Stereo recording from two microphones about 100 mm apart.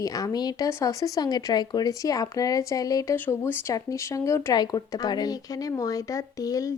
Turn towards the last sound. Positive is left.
turn(degrees=35)  # may be behind; listen again after turning